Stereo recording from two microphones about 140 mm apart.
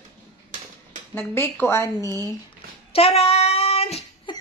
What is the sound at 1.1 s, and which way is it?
Speech, 15° left (ahead or behind).